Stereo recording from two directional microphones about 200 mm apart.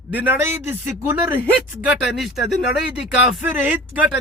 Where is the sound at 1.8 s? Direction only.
Centre (ahead or behind).